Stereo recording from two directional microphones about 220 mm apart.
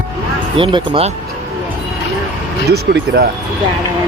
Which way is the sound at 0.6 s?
25° right (ahead or behind).